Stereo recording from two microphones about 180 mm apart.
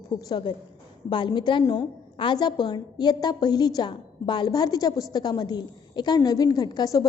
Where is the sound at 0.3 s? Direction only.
25° left (ahead or behind).